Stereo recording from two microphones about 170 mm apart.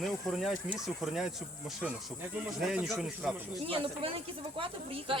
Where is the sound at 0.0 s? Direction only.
Centre (ahead or behind).